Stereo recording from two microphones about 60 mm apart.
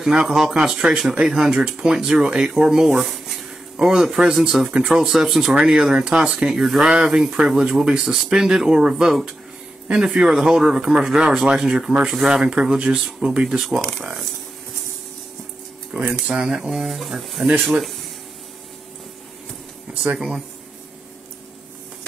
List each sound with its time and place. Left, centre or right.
0.0 s speech: centre
15.9 s speech: right
16.9 s speech: centre
20.2 s speech: centre